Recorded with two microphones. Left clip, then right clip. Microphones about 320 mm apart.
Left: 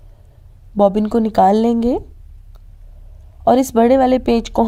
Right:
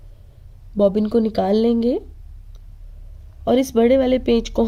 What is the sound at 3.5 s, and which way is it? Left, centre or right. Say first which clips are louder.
Speech: left 4 dB; centre.